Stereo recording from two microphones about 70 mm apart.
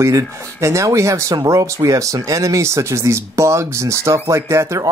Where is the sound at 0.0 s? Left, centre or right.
Right.